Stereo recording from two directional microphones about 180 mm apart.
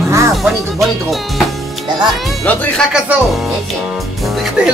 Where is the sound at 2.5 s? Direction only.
10° left (ahead or behind).